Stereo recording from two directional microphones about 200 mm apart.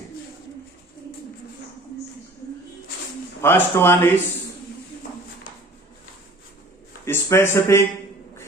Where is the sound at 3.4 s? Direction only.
10° left (ahead or behind).